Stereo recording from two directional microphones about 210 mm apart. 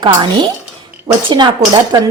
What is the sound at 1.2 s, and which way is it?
Speech, 20° right (ahead or behind).